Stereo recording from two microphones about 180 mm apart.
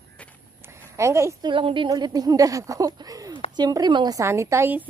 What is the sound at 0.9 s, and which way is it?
Speech, 15° right (ahead or behind).